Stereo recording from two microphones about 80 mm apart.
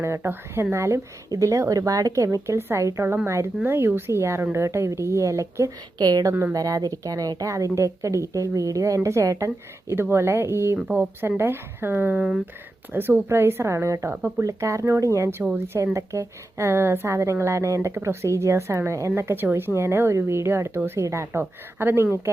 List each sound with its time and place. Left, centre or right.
0.0 s a woman's voice: right
2.6 s a woman's voice: right
9.9 s speech: right
14.1 s speech: right
14.4 s speech: right